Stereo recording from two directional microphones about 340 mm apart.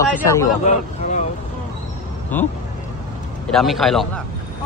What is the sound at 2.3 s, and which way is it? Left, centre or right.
Speech, centre.